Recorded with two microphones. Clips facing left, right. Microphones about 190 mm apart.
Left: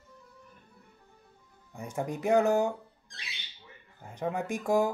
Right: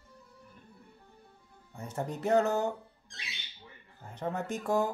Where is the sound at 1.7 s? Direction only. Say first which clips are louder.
Left 2 dB; 10° left (ahead or behind).